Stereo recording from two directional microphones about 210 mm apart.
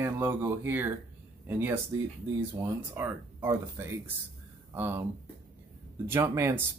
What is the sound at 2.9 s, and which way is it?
Speech, 10° right (ahead or behind).